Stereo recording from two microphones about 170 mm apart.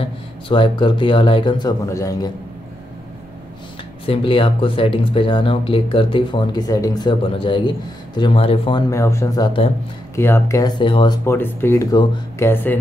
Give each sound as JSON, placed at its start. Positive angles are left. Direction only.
{"t": 0.0, "sound": "speech", "side_deg": 30}
{"t": 4.0, "sound": "speech", "side_deg": 30}
{"t": 8.9, "sound": "speech", "side_deg": 15}
{"t": 10.1, "sound": "speech", "side_deg": 15}
{"t": 10.8, "sound": "speech", "side_deg": 30}
{"t": 11.2, "sound": "speech", "side_deg": 15}